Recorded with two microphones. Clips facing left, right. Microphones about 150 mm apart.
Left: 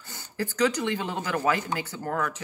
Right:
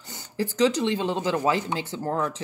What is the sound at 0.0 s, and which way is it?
Speech, 20° right (ahead or behind).